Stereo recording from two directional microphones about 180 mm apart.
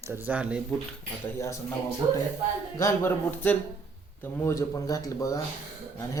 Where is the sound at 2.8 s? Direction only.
15° left (ahead or behind).